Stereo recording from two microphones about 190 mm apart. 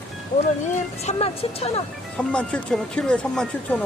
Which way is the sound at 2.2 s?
5° left (ahead or behind).